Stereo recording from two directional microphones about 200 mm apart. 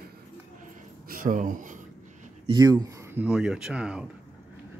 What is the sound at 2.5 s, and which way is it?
Speech, 20° right (ahead or behind).